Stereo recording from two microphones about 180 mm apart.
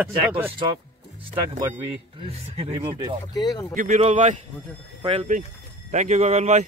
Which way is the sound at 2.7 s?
25° right (ahead or behind).